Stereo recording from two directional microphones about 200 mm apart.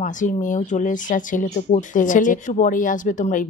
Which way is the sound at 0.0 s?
40° left (ahead or behind).